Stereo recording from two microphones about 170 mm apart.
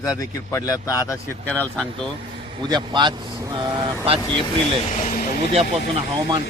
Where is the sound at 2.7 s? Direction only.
25° right (ahead or behind).